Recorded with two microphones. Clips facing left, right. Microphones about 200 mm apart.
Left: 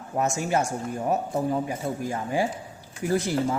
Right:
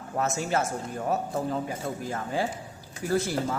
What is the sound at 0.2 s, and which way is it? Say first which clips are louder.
A man's voice: left 2 dB; 15° left (ahead or behind).